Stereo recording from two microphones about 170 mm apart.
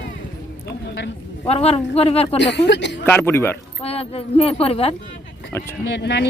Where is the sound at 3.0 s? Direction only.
10° left (ahead or behind).